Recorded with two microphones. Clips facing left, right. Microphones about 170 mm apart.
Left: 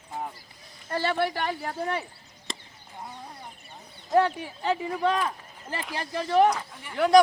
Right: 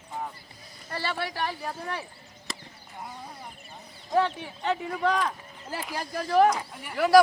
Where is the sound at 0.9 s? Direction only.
55° left (ahead or behind).